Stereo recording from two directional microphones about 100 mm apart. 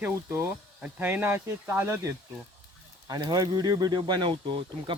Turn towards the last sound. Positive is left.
turn(degrees=-55)  # may be behind; listen again after turning